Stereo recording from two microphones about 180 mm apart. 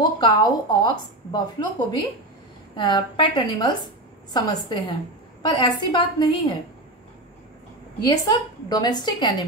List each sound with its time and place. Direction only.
0.0 s a woman's voice: 25° left (ahead or behind)
2.7 s a woman's voice: 25° left (ahead or behind)
8.0 s a woman's voice: 20° left (ahead or behind)